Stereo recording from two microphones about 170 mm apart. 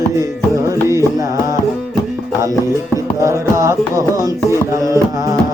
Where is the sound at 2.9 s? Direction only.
15° right (ahead or behind).